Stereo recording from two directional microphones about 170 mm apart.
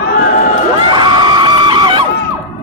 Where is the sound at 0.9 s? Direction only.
25° right (ahead or behind).